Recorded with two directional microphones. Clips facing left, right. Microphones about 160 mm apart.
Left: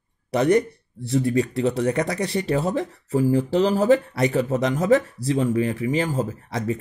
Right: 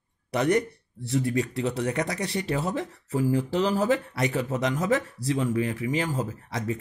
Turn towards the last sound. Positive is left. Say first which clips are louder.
# left 4 dB
turn(degrees=30)  # may be behind; listen again after turning